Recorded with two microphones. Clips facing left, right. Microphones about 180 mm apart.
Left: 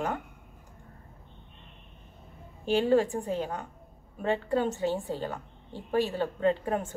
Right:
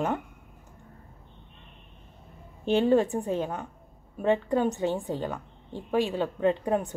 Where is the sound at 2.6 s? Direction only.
20° right (ahead or behind).